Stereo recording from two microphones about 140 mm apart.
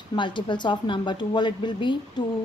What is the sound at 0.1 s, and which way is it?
Speech, 35° left (ahead or behind).